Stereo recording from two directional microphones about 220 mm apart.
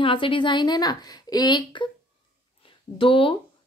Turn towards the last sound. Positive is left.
turn(degrees=25)  # may be behind; listen again after turning